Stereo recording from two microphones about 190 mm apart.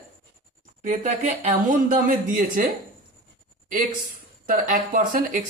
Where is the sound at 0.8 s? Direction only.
40° right (ahead or behind).